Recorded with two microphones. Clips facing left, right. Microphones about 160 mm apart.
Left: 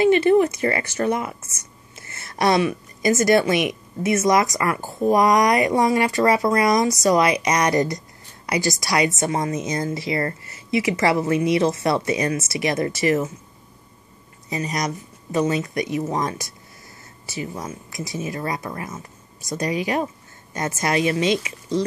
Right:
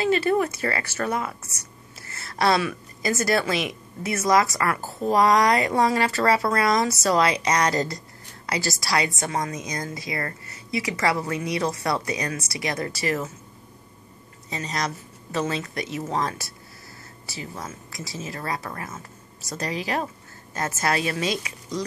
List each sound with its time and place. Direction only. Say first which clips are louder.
0.2 s a woman's voice: left 6 dB; 20° left (ahead or behind)
14.5 s a woman's voice: left 4 dB; 15° left (ahead or behind)